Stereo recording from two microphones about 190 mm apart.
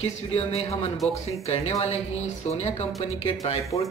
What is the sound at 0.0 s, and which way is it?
Speech, 30° left (ahead or behind).